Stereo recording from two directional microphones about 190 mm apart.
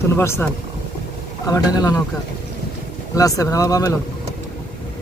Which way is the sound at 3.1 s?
15° left (ahead or behind).